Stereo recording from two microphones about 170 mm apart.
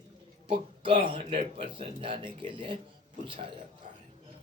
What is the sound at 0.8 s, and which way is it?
Speech, 30° right (ahead or behind).